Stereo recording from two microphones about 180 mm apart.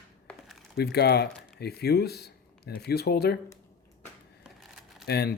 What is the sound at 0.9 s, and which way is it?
Speech, 65° left (ahead or behind).